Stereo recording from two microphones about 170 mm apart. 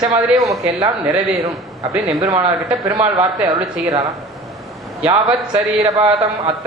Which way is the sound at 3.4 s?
20° right (ahead or behind).